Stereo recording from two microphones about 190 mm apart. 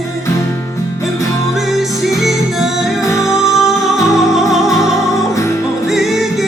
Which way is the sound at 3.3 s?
Centre (ahead or behind).